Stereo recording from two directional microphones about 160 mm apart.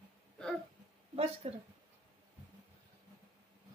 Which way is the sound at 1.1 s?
40° right (ahead or behind).